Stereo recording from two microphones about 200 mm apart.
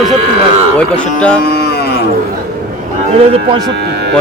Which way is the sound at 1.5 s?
50° left (ahead or behind).